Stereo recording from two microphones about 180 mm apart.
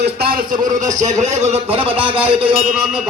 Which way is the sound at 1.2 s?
40° right (ahead or behind).